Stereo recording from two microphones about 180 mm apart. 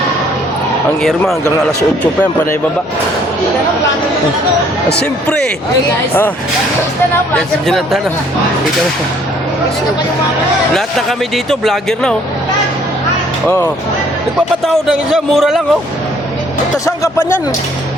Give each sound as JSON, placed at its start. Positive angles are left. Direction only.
{"t": 7.3, "sound": "speech", "side_deg": 0}
{"t": 11.4, "sound": "speech", "side_deg": 0}
{"t": 14.6, "sound": "speech", "side_deg": 0}
{"t": 16.7, "sound": "speech", "side_deg": 20}